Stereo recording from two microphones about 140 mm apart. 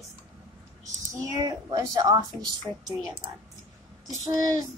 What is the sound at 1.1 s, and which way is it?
A woman's voice, 20° right (ahead or behind).